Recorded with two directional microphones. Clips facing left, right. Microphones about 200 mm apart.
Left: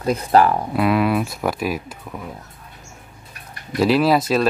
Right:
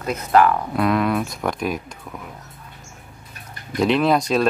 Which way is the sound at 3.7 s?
5° left (ahead or behind).